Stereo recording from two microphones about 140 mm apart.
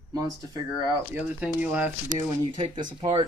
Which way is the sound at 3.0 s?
45° right (ahead or behind).